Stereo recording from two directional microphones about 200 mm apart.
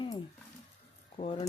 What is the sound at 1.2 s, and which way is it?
Speech, 30° left (ahead or behind).